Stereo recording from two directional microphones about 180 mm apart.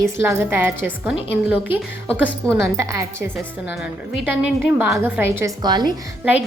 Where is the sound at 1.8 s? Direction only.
5° left (ahead or behind).